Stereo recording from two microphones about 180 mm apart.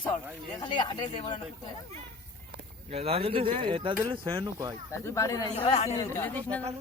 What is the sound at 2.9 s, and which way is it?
Speech, 35° right (ahead or behind).